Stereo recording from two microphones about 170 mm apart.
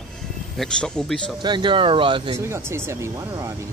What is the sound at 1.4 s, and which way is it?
Speech, 25° right (ahead or behind).